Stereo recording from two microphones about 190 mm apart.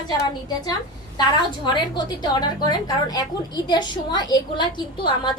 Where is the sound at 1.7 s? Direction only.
25° left (ahead or behind).